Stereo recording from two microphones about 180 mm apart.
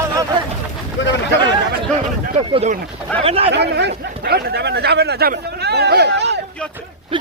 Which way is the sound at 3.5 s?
70° right (ahead or behind).